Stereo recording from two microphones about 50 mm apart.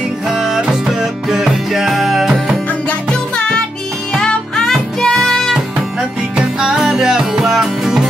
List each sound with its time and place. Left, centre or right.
0.3 s music: centre
2.9 s music: centre
5.9 s music: centre